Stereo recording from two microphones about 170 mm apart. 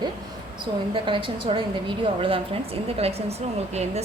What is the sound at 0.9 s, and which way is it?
A woman's voice, 30° right (ahead or behind).